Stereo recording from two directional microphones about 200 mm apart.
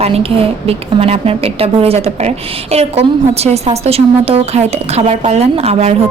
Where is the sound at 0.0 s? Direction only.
30° right (ahead or behind).